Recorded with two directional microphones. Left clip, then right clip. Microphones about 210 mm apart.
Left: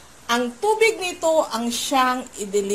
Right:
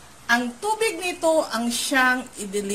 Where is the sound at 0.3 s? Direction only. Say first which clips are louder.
Left 2 dB; centre (ahead or behind).